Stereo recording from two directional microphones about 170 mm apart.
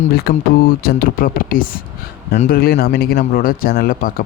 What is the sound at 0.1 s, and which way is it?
Speech, 60° left (ahead or behind).